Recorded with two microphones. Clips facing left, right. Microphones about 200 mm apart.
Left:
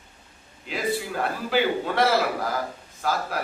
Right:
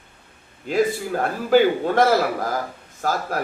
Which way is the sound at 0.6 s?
45° right (ahead or behind).